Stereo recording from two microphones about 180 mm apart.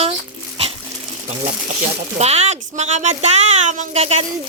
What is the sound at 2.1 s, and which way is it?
Speech, 35° right (ahead or behind).